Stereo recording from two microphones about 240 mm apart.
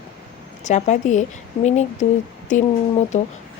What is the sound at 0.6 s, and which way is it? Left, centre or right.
Speech, left.